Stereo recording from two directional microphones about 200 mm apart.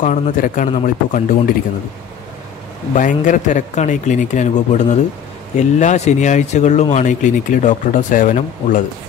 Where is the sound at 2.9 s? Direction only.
40° left (ahead or behind).